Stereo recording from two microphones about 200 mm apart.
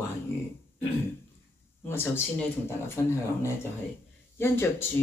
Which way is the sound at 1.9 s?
10° left (ahead or behind).